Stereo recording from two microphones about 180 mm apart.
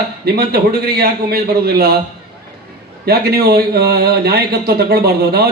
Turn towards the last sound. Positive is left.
turn(degrees=-60)  # may be behind; listen again after turning